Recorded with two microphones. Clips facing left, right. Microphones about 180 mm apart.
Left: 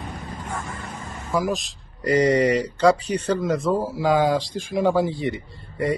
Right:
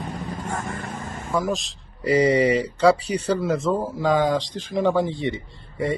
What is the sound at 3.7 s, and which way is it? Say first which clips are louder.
Speech: left 1 dB; 10° left (ahead or behind).